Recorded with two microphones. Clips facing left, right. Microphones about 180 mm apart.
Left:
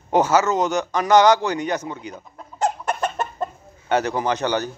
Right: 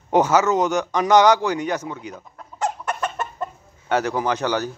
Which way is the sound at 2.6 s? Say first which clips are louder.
Left 2 dB; 30° left (ahead or behind).